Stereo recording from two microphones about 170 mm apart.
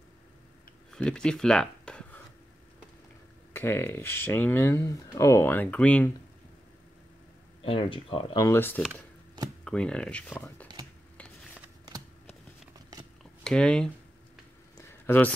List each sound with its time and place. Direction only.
0.9 s speech: 5° left (ahead or behind)
3.5 s speech: 15° left (ahead or behind)
7.6 s speech: 30° left (ahead or behind)
8.5 s speech: 10° left (ahead or behind)
13.2 s a sound: 5° left (ahead or behind)